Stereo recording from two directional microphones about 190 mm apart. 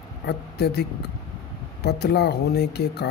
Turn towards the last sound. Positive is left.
turn(degrees=60)  # may be behind; listen again after turning